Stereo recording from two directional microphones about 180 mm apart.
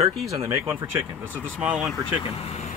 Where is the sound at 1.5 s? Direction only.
5° right (ahead or behind).